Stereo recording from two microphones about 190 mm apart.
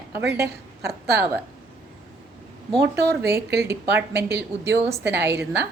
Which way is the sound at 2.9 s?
10° right (ahead or behind).